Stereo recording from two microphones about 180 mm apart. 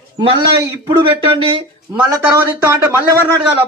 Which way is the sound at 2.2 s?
10° right (ahead or behind).